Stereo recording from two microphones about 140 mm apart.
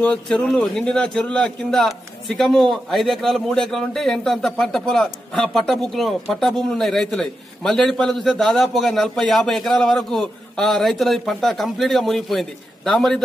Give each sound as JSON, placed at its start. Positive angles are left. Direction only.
{"t": 0.0, "sound": "a man's voice", "side_deg": 10}